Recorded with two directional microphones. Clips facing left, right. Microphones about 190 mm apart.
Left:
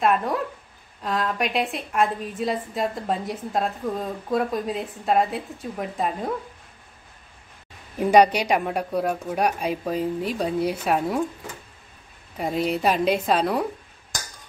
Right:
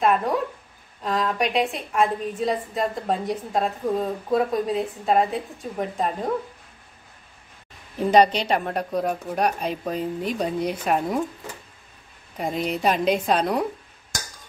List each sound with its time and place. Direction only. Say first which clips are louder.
0.0 s a woman's voice: right 1 dB; centre (ahead or behind)
8.0 s a woman's voice: left 1 dB; 10° left (ahead or behind)
12.4 s a woman's voice: left 2 dB; 5° left (ahead or behind)